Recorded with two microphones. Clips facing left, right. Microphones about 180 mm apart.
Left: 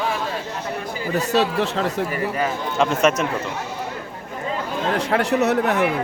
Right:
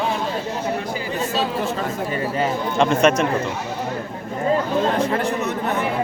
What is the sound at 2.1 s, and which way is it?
Speech, 25° right (ahead or behind).